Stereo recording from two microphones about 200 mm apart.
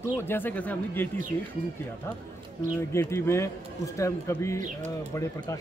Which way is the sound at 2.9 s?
15° left (ahead or behind).